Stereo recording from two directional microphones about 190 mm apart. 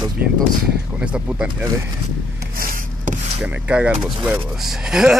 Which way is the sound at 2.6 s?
45° right (ahead or behind).